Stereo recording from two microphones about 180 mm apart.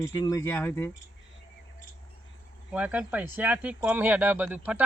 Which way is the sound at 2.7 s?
10° right (ahead or behind).